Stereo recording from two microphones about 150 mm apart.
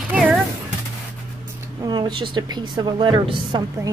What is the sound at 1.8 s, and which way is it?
Speech, 30° right (ahead or behind).